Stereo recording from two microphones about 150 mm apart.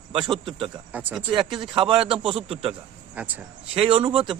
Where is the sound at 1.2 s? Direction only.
30° right (ahead or behind).